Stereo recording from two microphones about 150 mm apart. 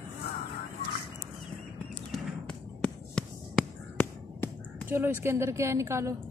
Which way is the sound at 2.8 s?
5° left (ahead or behind).